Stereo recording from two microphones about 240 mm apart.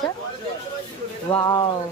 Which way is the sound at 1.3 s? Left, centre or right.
Centre.